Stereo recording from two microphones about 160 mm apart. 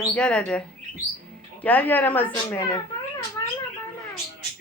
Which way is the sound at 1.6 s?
10° left (ahead or behind).